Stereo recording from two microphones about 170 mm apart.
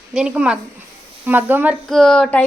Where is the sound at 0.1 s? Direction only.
5° right (ahead or behind).